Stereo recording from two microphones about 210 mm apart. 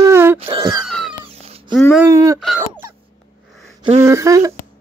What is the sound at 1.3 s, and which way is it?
Cat, 25° right (ahead or behind).